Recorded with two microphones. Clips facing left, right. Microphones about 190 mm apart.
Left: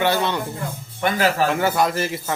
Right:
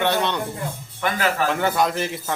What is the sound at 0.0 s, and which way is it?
Speech, 5° left (ahead or behind).